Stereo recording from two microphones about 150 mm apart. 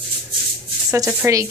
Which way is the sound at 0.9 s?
20° right (ahead or behind).